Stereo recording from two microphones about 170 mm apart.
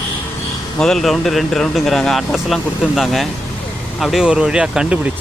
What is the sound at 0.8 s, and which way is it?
Speech, centre (ahead or behind).